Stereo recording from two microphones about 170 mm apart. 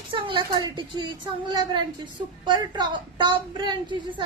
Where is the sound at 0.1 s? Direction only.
30° right (ahead or behind).